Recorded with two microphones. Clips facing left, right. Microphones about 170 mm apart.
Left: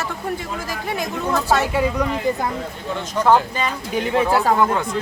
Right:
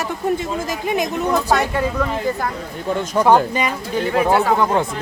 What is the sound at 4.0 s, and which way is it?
Speech, 15° left (ahead or behind).